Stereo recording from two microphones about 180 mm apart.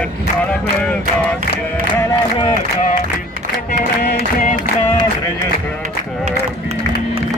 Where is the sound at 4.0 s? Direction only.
55° left (ahead or behind).